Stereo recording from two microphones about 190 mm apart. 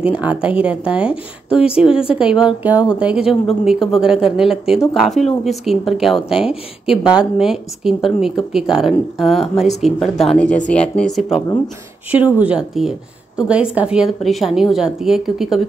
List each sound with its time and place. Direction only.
0.0 s speech: 5° right (ahead or behind)
12.4 s speech: 5° right (ahead or behind)